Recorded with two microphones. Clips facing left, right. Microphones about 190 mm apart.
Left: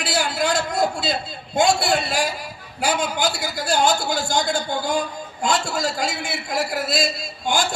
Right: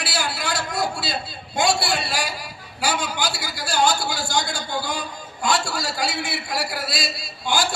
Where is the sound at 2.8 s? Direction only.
50° left (ahead or behind).